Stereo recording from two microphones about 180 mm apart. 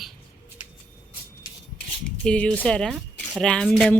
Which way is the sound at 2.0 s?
5° left (ahead or behind).